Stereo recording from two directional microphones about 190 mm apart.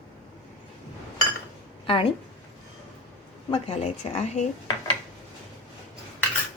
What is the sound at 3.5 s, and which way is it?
Speech, 35° left (ahead or behind).